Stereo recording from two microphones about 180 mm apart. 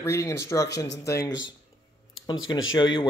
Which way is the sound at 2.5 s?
20° left (ahead or behind).